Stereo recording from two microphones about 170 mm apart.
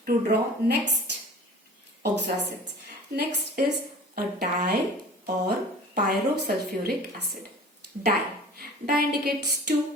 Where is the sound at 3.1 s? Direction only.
70° right (ahead or behind).